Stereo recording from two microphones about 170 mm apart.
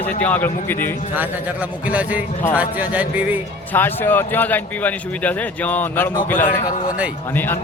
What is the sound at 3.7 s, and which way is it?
A man's voice, 10° left (ahead or behind).